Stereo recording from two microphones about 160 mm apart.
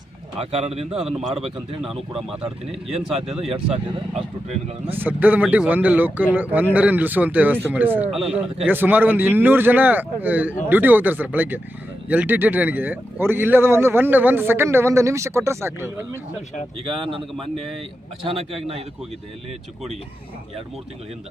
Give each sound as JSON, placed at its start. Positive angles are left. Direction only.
{"t": 0.3, "sound": "speech", "side_deg": -40}
{"t": 0.9, "sound": "speech", "side_deg": -5}
{"t": 1.3, "sound": "speech", "side_deg": -35}
{"t": 3.4, "sound": "speech", "side_deg": -40}
{"t": 4.9, "sound": "speech", "side_deg": -10}
{"t": 8.2, "sound": "speech", "side_deg": -40}
{"t": 8.6, "sound": "speech", "side_deg": -10}
{"t": 16.8, "sound": "speech", "side_deg": -35}
{"t": 17.3, "sound": "speech", "side_deg": 0}
{"t": 18.2, "sound": "speech", "side_deg": -35}